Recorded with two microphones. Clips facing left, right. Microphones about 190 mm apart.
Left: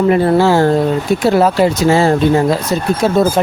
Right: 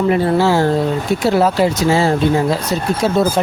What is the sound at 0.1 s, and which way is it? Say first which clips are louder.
Speech: left 3 dB; 50° left (ahead or behind).